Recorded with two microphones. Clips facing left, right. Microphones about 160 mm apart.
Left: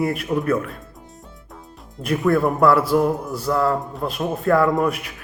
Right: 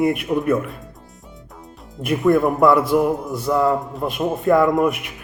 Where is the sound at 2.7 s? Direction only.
5° left (ahead or behind).